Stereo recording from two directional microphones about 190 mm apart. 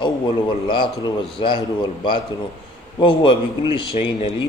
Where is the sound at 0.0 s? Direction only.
25° left (ahead or behind).